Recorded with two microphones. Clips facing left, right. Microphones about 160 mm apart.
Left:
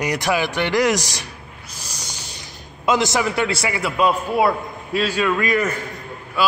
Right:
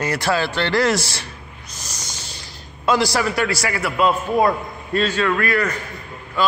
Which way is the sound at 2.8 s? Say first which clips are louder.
Even; 20° left (ahead or behind).